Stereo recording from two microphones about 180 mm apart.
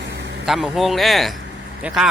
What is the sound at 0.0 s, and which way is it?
Vehicle, 75° right (ahead or behind).